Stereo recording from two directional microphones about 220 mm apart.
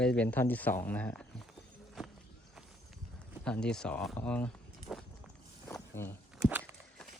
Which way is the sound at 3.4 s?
5° left (ahead or behind).